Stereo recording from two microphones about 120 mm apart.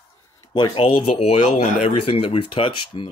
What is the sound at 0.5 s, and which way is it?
Speech, 40° left (ahead or behind).